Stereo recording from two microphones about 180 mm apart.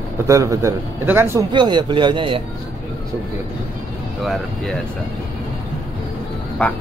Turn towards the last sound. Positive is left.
turn(degrees=10)  # may be behind; listen again after turning